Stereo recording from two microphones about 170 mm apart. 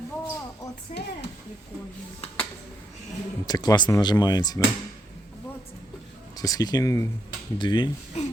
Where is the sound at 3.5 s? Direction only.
25° left (ahead or behind).